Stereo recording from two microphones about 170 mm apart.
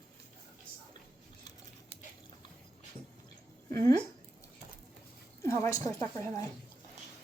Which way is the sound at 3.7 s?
20° left (ahead or behind).